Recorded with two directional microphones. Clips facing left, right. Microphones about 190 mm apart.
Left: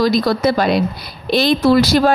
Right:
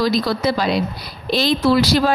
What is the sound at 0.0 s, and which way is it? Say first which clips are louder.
Speech: left 4 dB; 50° left (ahead or behind).